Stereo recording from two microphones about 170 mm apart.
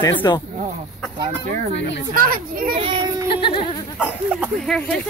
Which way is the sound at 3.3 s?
30° left (ahead or behind).